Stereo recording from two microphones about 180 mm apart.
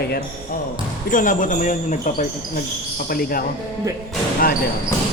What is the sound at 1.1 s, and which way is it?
Speech, 45° left (ahead or behind).